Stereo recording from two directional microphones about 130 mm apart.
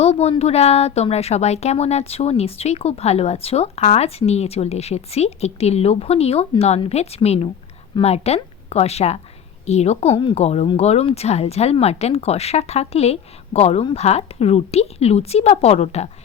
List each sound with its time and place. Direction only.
0.0 s a woman's voice: 55° left (ahead or behind)